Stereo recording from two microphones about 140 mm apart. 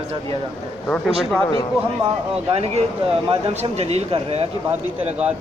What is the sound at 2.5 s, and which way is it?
Speech, 50° right (ahead or behind).